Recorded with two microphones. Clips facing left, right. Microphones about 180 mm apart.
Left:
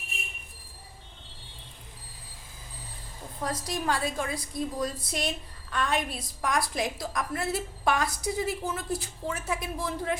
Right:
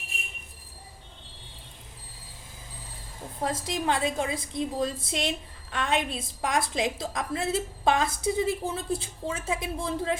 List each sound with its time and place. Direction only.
3.4 s a woman's voice: 25° right (ahead or behind)